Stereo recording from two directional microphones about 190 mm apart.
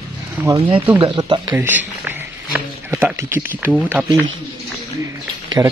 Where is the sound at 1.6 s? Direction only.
10° right (ahead or behind).